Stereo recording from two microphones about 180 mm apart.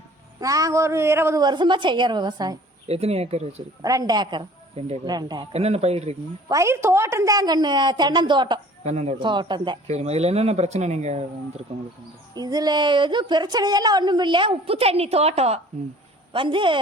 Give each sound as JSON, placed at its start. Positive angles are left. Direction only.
{"t": 0.3, "sound": "a woman's voice", "side_deg": -20}
{"t": 2.8, "sound": "speech", "side_deg": -35}
{"t": 3.8, "sound": "speech", "side_deg": -20}
{"t": 6.5, "sound": "a woman's voice", "side_deg": -15}
{"t": 8.8, "sound": "speech", "side_deg": -40}
{"t": 9.1, "sound": "a woman's voice", "side_deg": -25}
{"t": 9.8, "sound": "speech", "side_deg": -40}
{"t": 12.3, "sound": "a woman's voice", "side_deg": -20}